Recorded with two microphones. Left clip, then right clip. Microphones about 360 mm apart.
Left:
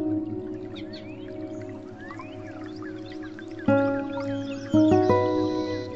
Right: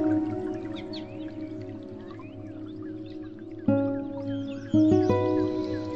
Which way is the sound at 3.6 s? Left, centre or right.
Left.